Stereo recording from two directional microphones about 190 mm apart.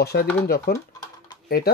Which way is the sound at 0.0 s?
55° left (ahead or behind).